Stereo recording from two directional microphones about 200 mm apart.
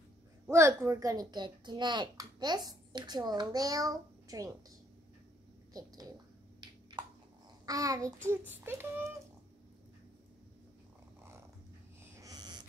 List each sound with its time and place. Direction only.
0.5 s a child's voice: 15° right (ahead or behind)
7.6 s a child's voice: 15° right (ahead or behind)
12.2 s a sound: 20° right (ahead or behind)